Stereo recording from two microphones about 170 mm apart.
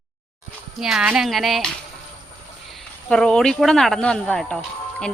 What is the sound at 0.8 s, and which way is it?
Speech, 5° right (ahead or behind).